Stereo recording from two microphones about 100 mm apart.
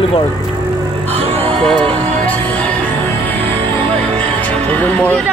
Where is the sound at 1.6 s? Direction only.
10° left (ahead or behind).